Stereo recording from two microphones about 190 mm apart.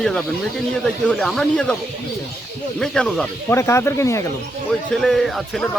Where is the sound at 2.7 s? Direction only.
5° left (ahead or behind).